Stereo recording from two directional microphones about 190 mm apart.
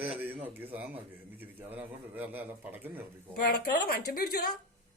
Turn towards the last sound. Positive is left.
turn(degrees=50)  # may be behind; listen again after turning